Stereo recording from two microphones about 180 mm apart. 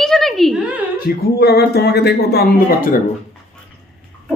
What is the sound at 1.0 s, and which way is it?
Speech, 60° left (ahead or behind).